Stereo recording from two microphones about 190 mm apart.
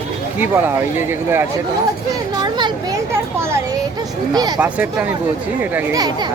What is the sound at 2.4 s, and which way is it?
Children playing, 20° right (ahead or behind).